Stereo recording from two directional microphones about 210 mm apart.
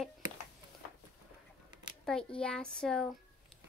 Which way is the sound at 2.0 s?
5° left (ahead or behind).